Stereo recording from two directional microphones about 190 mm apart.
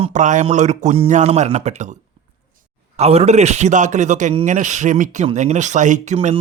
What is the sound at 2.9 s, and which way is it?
A man's voice, 35° right (ahead or behind).